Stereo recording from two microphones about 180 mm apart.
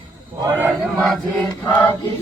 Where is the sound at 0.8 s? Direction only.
Centre (ahead or behind).